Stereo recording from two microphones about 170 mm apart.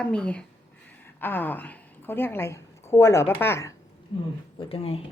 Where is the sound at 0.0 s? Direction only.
5° left (ahead or behind).